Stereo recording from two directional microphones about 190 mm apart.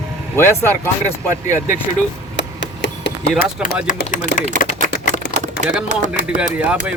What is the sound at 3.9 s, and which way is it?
Speech, 45° left (ahead or behind).